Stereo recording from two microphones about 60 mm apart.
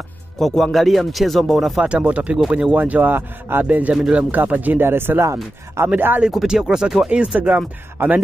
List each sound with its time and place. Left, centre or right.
0.4 s speech: centre
1.8 s speech: centre; by 3.6 s right
3.6 s speech: right
5.2 s speech: right
5.9 s speech: right
6.4 s speech: centre
7.1 s speech: right